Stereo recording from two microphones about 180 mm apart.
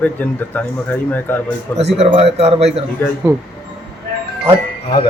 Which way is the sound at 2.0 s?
35° right (ahead or behind).